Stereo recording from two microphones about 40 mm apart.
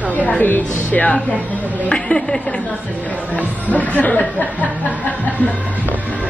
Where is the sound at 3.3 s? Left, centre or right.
Left.